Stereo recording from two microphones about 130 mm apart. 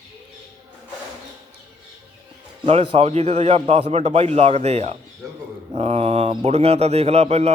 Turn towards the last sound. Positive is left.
turn(degrees=-55)  # may be behind; listen again after turning